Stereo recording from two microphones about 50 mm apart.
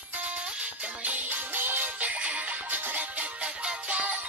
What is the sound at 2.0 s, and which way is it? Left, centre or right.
Music, right.